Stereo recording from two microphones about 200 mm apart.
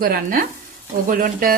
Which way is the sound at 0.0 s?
45° right (ahead or behind).